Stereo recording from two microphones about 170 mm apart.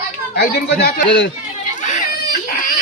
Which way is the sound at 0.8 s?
80° left.